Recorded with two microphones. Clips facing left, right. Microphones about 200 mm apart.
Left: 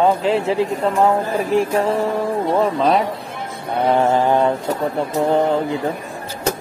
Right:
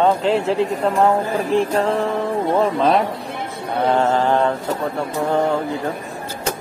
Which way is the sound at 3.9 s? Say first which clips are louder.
Left 2 dB; 15° left (ahead or behind).